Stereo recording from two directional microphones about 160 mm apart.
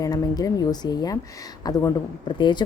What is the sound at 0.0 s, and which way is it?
Speech, 25° left (ahead or behind).